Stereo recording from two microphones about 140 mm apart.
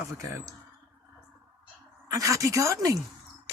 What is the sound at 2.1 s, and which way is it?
Speech, 25° right (ahead or behind).